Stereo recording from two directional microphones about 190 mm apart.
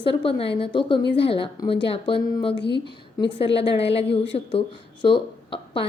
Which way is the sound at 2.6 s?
65° left (ahead or behind).